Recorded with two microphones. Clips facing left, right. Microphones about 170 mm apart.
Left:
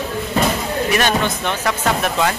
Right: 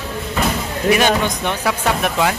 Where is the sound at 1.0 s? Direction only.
15° right (ahead or behind).